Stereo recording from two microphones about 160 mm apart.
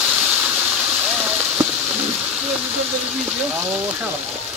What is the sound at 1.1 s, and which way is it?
Rain on surface, 10° right (ahead or behind).